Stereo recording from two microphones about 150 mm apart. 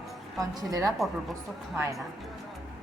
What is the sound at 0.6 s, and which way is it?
Speech, 25° right (ahead or behind).